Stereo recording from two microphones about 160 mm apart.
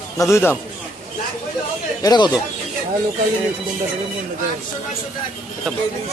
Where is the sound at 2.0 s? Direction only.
25° left (ahead or behind).